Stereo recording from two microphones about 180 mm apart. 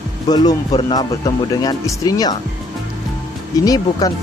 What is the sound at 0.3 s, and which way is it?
Speech, 25° left (ahead or behind).